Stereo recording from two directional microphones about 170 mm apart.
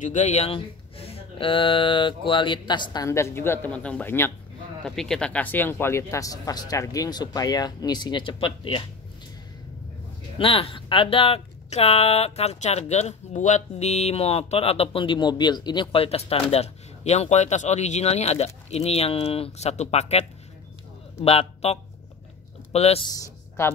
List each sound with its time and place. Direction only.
0.0 s speech: 45° left (ahead or behind)
10.3 s a man's voice: 35° left (ahead or behind)
23.0 s speech: 20° left (ahead or behind)